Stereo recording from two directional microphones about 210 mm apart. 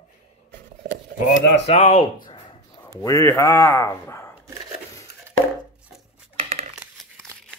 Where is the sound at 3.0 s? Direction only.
15° left (ahead or behind).